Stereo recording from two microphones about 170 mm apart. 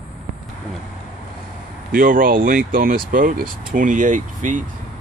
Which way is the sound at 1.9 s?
55° right (ahead or behind).